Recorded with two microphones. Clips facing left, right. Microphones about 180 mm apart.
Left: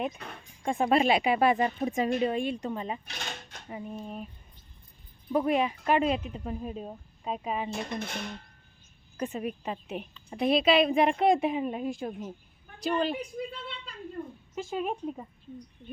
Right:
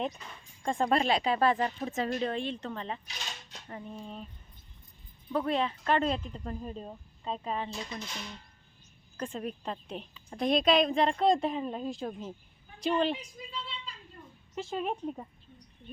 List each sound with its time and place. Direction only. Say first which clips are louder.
0.2 s speech: left 5 dB; 60° left (ahead or behind)
0.6 s a woman's voice: left 3 dB; 10° left (ahead or behind)
3.1 s speech: left 4 dB; 55° left (ahead or behind)
3.7 s a woman's voice: left 4 dB; 10° left (ahead or behind)
5.3 s a woman's voice: left 4 dB; 15° left (ahead or behind)
7.7 s speech: left 6 dB; 60° left (ahead or behind)
9.1 s a woman's voice: left 3 dB; 10° left (ahead or behind)
13.1 s a woman's voice: left 7 dB; 60° left (ahead or behind)
14.5 s speech: left 1 dB; 5° left (ahead or behind)